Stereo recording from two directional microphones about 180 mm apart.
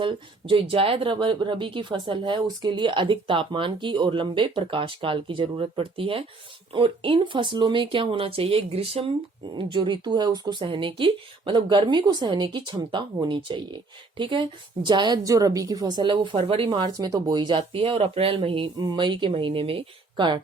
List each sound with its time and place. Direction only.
0.0 s speech: 30° right (ahead or behind)